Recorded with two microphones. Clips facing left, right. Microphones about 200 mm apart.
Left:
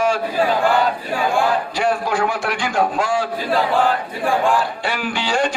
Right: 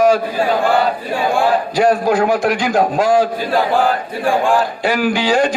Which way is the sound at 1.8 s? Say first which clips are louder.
Right 8 dB; 40° right (ahead or behind).